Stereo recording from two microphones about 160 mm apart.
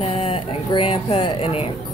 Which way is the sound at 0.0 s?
35° left (ahead or behind).